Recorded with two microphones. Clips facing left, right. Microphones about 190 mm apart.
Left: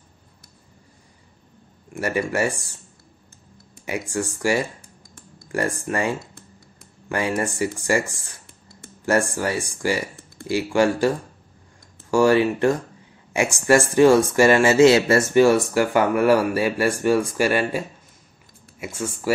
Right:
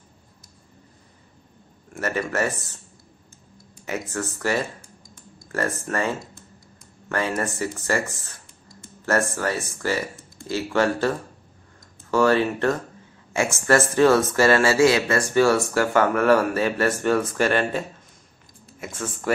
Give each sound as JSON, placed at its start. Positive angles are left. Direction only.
{"t": 2.0, "sound": "speech", "side_deg": 10}
{"t": 4.1, "sound": "speech", "side_deg": 15}